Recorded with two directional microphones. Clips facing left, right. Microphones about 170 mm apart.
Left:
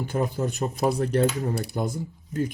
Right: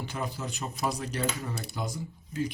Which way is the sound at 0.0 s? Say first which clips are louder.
Left 9 dB; 50° left (ahead or behind).